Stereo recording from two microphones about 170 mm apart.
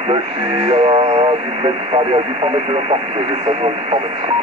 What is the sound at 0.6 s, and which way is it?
Speech, 30° right (ahead or behind).